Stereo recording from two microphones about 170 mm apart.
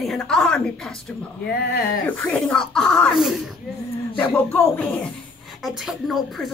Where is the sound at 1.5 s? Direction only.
70° left (ahead or behind).